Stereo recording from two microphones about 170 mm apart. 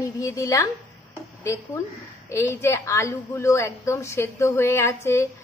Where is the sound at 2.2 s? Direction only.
15° left (ahead or behind).